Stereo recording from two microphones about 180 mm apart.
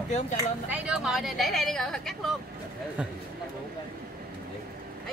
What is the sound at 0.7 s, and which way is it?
A woman's voice, 5° right (ahead or behind).